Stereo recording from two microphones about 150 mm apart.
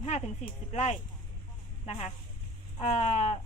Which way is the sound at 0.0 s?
45° left (ahead or behind).